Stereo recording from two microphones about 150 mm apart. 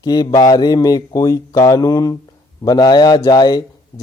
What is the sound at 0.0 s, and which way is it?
A man's voice, 25° left (ahead or behind).